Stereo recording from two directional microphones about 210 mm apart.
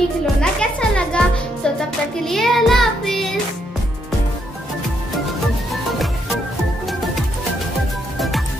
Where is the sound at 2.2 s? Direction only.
Centre (ahead or behind).